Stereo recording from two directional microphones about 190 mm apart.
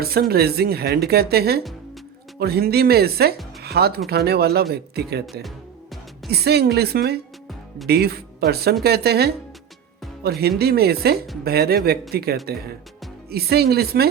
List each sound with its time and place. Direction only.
0.0 s speech: 55° right (ahead or behind)
6.4 s speech: 60° right (ahead or behind)
10.6 s speech: 55° right (ahead or behind)